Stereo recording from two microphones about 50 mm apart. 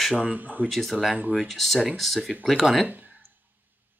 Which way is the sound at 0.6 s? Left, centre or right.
Centre.